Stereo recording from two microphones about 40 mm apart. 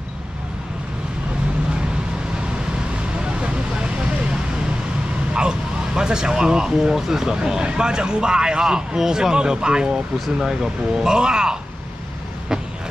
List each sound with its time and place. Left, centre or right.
3.0 s vehicle: right
5.3 s speech: centre